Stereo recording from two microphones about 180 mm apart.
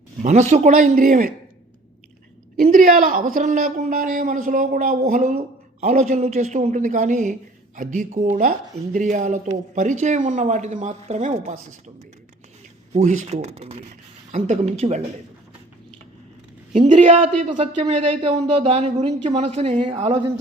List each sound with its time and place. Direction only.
0.2 s speech: 40° right (ahead or behind)
2.6 s speech: 45° right (ahead or behind)
12.9 s speech: 40° right (ahead or behind)
16.7 s speech: 35° right (ahead or behind)